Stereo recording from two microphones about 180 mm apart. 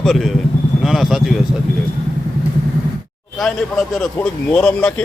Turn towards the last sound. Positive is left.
turn(degrees=5)  # may be behind; listen again after turning